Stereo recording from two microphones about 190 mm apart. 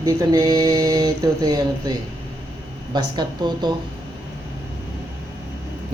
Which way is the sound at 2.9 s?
25° right (ahead or behind).